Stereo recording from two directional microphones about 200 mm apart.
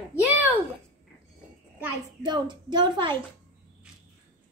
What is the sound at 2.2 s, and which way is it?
Speech, 20° right (ahead or behind).